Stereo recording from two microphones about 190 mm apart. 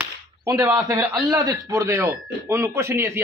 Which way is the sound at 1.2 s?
20° right (ahead or behind).